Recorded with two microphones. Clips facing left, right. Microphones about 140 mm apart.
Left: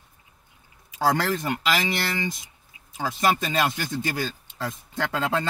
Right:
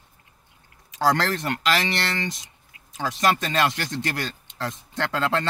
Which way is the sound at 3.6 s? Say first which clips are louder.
Right 1 dB; 85° right.